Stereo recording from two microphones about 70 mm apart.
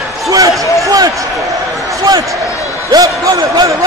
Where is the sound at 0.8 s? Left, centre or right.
Right.